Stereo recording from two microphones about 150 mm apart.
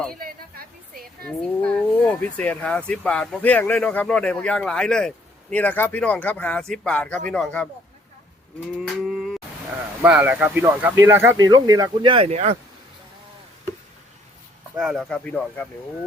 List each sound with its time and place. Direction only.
0.2 s a sound: 80° right
1.3 s speech: 5° left (ahead or behind)
8.8 s cattle: centre (ahead or behind)
10.0 s speech: 10° right (ahead or behind)
12.0 s speech: 40° right (ahead or behind)
14.8 s speech: centre (ahead or behind)